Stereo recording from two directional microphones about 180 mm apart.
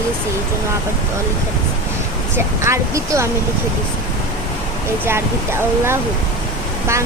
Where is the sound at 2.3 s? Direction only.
15° right (ahead or behind).